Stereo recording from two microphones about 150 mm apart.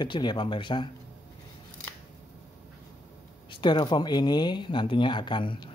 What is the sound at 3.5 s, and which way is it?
Speech, 30° left (ahead or behind).